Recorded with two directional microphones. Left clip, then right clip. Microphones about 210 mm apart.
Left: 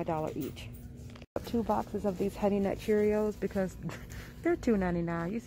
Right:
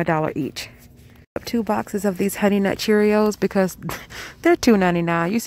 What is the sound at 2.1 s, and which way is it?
Speech, 40° right (ahead or behind).